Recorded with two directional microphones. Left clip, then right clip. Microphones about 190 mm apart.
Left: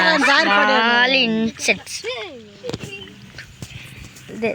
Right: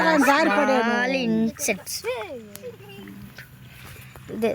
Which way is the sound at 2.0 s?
40° left (ahead or behind).